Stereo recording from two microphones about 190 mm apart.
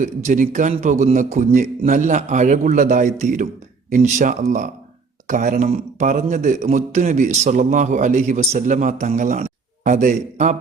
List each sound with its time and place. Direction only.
0.0 s a man's voice: 40° right (ahead or behind)